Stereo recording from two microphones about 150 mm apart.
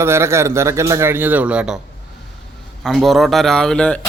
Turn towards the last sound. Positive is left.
turn(degrees=5)  # may be behind; listen again after turning